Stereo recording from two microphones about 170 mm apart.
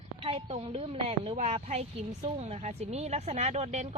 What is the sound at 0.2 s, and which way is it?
Speech, 35° right (ahead or behind).